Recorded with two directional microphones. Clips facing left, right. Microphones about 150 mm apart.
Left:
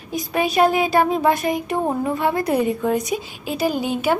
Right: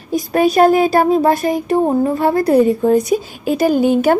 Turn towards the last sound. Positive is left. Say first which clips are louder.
# right 8 dB
turn(degrees=-45)  # may be behind; listen again after turning